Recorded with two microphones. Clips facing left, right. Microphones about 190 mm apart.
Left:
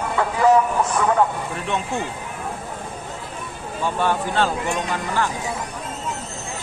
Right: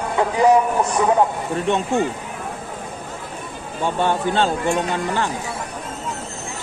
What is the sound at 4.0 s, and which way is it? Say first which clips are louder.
Speech: right 2 dB; 25° right (ahead or behind).